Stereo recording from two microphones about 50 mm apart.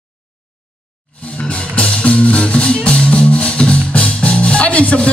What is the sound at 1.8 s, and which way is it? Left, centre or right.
Music, left.